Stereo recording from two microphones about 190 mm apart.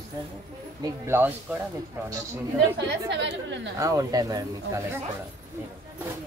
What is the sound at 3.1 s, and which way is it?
Speech, 65° right (ahead or behind).